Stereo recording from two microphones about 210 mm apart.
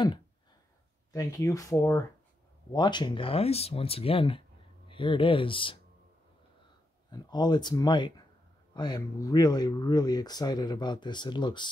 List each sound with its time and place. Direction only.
1.1 s speech: 15° left (ahead or behind)
7.1 s speech: 20° left (ahead or behind)